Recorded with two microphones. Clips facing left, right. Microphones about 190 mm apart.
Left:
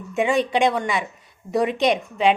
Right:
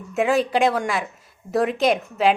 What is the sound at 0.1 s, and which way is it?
A woman's voice, centre (ahead or behind).